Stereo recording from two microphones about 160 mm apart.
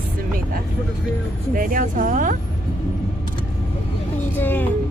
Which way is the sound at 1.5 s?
55° right (ahead or behind).